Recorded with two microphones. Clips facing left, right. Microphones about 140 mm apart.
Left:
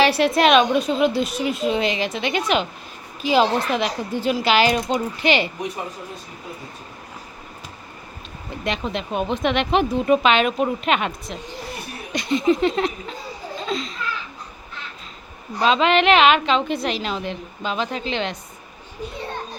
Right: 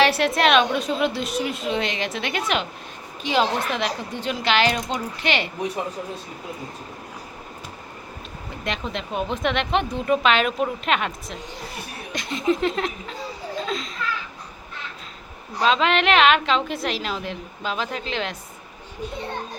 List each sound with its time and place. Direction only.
0.0 s a woman's voice: centre (ahead or behind)
8.6 s a woman's voice: centre (ahead or behind)
15.5 s a woman's voice: centre (ahead or behind)